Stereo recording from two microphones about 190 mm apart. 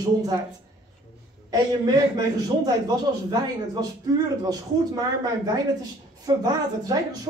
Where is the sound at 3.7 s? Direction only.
20° right (ahead or behind).